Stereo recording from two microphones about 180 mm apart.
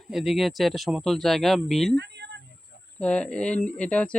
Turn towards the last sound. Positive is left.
turn(degrees=5)  # may be behind; listen again after turning